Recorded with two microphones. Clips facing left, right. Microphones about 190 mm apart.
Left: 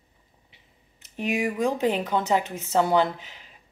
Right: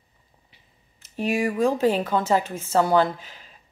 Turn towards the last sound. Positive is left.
turn(degrees=20)  # may be behind; listen again after turning